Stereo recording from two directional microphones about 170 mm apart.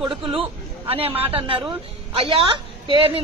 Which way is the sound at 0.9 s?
35° right (ahead or behind).